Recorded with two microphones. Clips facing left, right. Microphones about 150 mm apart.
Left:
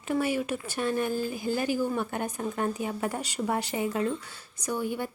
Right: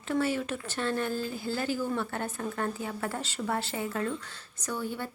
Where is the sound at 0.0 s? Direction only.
15° left (ahead or behind).